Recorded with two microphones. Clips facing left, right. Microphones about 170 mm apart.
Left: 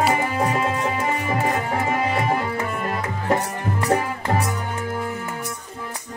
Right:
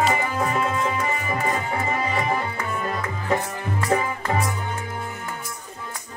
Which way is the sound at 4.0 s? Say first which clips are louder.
Left 1 dB; 75° left (ahead or behind).